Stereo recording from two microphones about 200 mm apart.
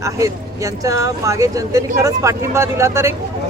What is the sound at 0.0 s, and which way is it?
Speech, 15° right (ahead or behind).